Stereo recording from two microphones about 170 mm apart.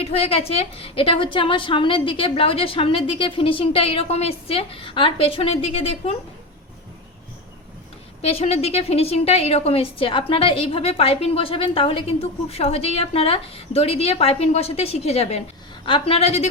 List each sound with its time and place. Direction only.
0.0 s a woman's voice: 35° left (ahead or behind)
8.2 s a woman's voice: 35° left (ahead or behind)